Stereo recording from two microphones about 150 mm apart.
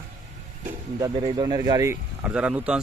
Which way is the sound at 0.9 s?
25° right (ahead or behind).